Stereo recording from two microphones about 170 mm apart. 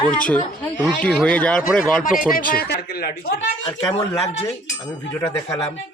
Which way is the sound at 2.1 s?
55° left (ahead or behind).